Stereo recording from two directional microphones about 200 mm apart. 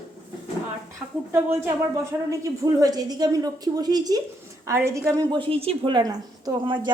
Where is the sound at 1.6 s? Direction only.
15° right (ahead or behind).